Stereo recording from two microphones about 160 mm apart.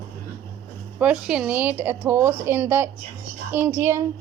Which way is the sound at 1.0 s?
5° right (ahead or behind).